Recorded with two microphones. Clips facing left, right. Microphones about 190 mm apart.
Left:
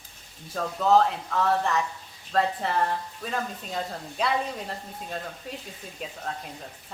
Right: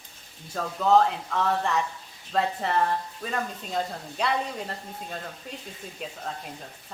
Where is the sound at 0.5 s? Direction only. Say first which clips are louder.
Even; centre (ahead or behind).